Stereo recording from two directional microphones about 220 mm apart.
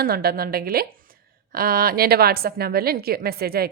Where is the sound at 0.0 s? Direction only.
45° right (ahead or behind).